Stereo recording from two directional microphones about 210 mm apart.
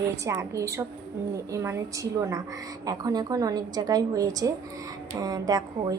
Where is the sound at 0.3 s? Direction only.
15° right (ahead or behind).